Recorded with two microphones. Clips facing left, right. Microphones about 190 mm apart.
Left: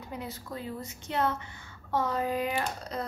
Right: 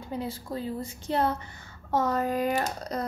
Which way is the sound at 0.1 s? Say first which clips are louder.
Right 6 dB; 30° right (ahead or behind).